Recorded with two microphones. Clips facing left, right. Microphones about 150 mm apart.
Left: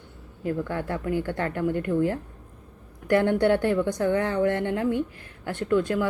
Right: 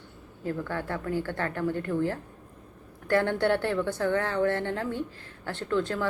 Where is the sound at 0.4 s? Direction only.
20° left (ahead or behind).